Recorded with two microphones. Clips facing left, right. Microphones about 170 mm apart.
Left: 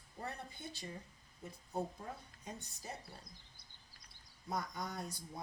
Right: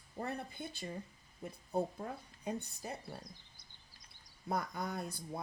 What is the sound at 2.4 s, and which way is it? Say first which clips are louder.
Speech: right 8 dB; 60° right (ahead or behind).